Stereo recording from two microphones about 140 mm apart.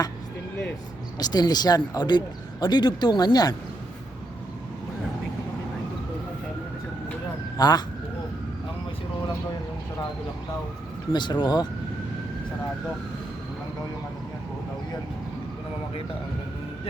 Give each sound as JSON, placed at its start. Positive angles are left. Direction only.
{"t": 1.2, "sound": "speech", "side_deg": 30}
{"t": 7.5, "sound": "speech", "side_deg": 30}
{"t": 11.1, "sound": "speech", "side_deg": 30}